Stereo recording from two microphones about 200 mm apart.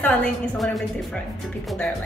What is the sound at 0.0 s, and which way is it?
A woman's voice, 5° left (ahead or behind).